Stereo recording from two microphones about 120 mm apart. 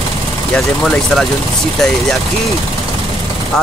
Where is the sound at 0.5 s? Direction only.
Centre (ahead or behind).